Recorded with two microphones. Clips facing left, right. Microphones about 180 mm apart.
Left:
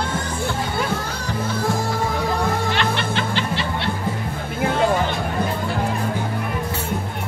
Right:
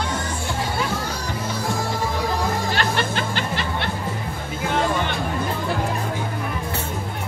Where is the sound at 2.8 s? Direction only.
45° right (ahead or behind).